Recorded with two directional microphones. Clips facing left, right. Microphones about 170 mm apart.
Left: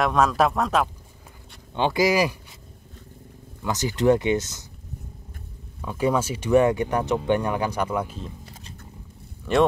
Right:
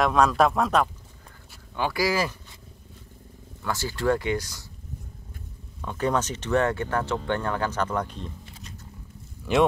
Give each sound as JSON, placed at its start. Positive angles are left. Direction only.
{"t": 0.0, "sound": "speech", "side_deg": 0}
{"t": 1.8, "sound": "speech", "side_deg": 20}
{"t": 3.6, "sound": "speech", "side_deg": 20}
{"t": 5.8, "sound": "speech", "side_deg": 10}
{"t": 8.5, "sound": "wild animals", "side_deg": 40}
{"t": 9.5, "sound": "speech", "side_deg": 0}